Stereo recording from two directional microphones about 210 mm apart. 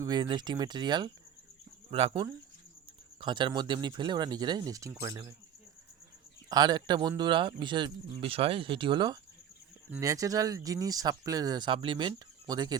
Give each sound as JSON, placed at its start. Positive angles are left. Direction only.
{"t": 0.0, "sound": "speech", "side_deg": -20}
{"t": 6.5, "sound": "speech", "side_deg": -20}